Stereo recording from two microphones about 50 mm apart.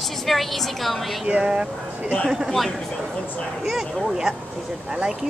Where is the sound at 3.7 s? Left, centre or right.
Centre.